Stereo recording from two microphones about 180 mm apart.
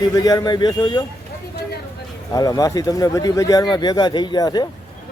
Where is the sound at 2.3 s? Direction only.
20° left (ahead or behind).